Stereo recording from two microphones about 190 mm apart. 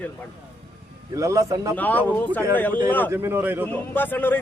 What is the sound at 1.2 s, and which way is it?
Speech, 15° right (ahead or behind).